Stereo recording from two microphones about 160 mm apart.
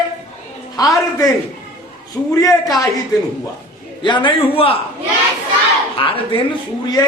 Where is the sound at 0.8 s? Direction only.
20° left (ahead or behind).